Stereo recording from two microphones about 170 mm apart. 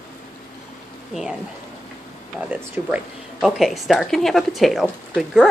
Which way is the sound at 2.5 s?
10° right (ahead or behind).